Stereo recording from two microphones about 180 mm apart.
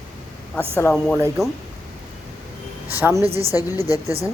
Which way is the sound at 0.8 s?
10° left (ahead or behind).